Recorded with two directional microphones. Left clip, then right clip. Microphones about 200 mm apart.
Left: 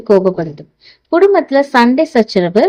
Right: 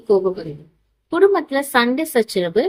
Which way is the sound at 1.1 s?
35° left (ahead or behind).